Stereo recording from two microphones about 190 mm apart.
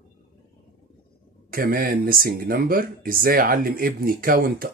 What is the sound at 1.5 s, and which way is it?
Speech, 50° right (ahead or behind).